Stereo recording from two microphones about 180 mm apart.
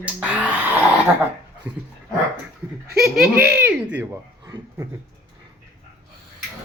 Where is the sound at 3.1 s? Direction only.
55° right (ahead or behind).